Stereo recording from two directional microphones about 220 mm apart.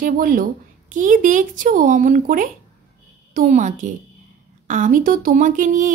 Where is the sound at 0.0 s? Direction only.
40° right (ahead or behind).